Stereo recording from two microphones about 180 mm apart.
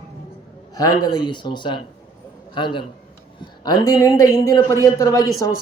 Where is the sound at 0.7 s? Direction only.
20° left (ahead or behind).